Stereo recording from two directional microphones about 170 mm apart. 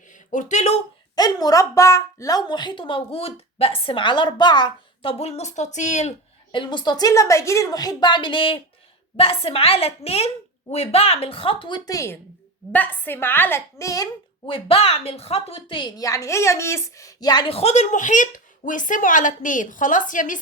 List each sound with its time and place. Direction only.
0.1 s speech: 50° left (ahead or behind)
1.1 s a woman's voice: 25° left (ahead or behind); by 6.1 s 45° left (ahead or behind)
6.5 s a woman's voice: 25° left (ahead or behind)
14.4 s a woman's voice: 30° left (ahead or behind); by 20.4 s 50° left (ahead or behind)